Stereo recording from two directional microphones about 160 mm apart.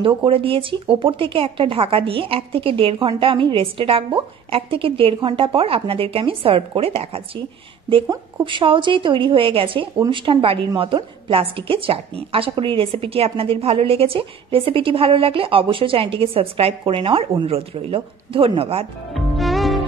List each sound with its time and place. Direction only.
0.0 s a woman's voice: 35° right (ahead or behind)
19.1 s music: centre (ahead or behind)